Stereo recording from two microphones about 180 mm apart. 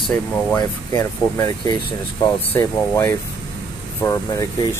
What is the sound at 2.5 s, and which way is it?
Speech, 15° left (ahead or behind).